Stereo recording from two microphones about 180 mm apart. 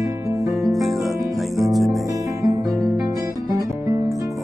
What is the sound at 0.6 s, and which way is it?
Music, centre (ahead or behind).